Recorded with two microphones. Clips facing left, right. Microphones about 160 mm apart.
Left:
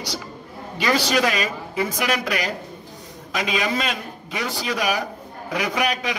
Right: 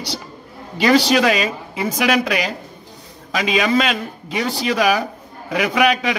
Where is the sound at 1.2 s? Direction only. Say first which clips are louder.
Right 5 dB; 90° right.